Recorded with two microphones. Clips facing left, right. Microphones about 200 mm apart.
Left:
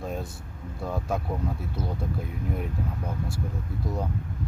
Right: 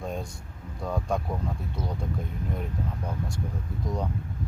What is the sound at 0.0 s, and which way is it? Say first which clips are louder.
Air conditioning: left 1 dB; 5° left (ahead or behind).